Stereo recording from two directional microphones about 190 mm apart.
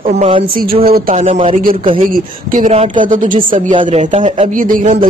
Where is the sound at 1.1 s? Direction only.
30° right (ahead or behind).